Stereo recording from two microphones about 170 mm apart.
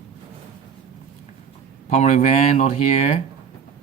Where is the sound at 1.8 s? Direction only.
40° left (ahead or behind).